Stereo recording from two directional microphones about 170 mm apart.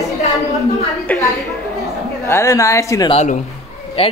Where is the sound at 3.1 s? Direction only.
40° left (ahead or behind).